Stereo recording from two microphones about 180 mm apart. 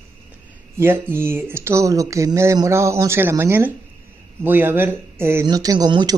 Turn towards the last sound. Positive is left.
turn(degrees=-20)  # may be behind; listen again after turning